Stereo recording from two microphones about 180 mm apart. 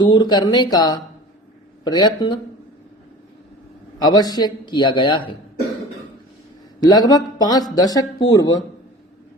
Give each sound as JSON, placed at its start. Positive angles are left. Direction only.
{"t": 0.0, "sound": "a man's voice", "side_deg": 25}
{"t": 3.9, "sound": "a man's voice", "side_deg": 20}
{"t": 6.8, "sound": "a man's voice", "side_deg": 20}